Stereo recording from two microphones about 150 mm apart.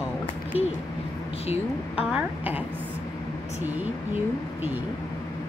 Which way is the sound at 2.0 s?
10° right (ahead or behind).